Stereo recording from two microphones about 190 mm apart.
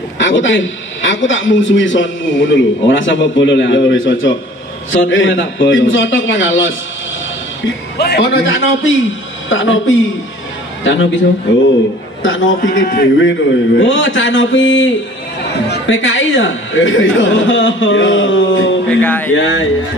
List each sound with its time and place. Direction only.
0.2 s a man's voice: 80° left
8.0 s a man's voice: 60° left (ahead or behind); by 8.9 s 80° left
9.5 s a man's voice: 90° left
10.8 s a man's voice: 75° left (ahead or behind)
12.2 s a man's voice: 90° left
12.6 s a man's voice: 45° left (ahead or behind)
13.2 s a man's voice: 80° left
18.9 s music: 10° left (ahead or behind)
19.3 s a man's voice: 90° left